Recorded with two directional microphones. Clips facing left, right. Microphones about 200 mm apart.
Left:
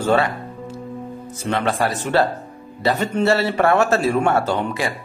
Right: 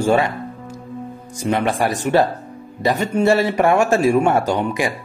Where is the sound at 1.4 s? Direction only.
15° right (ahead or behind).